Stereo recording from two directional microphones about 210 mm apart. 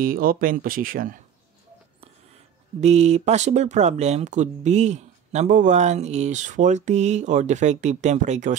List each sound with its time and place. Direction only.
0.0 s speech: 40° right (ahead or behind)
2.8 s speech: 30° right (ahead or behind)